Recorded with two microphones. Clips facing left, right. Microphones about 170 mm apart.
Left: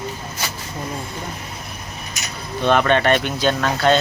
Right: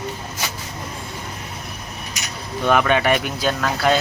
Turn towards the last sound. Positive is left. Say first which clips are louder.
# left 2 dB
turn(degrees=-5)  # may be behind; listen again after turning